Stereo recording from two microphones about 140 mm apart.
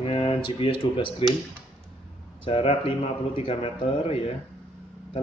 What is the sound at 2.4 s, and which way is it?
Speech, 45° left (ahead or behind).